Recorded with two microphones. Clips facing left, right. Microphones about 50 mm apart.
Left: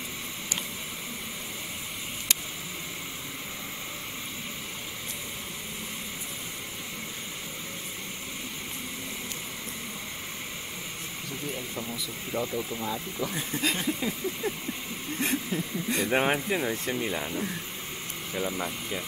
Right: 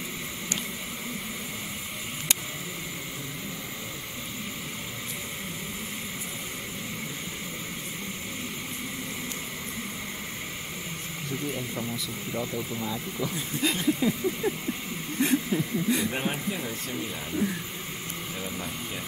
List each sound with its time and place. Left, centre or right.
11.5 s speech: centre
12.4 s speech: centre
15.1 s a sound: centre
16.0 s speech: left
16.6 s speech: left